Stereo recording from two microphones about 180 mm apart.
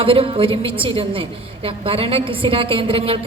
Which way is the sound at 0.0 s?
30° right (ahead or behind).